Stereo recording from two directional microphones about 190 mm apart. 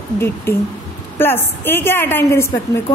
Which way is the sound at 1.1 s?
10° left (ahead or behind).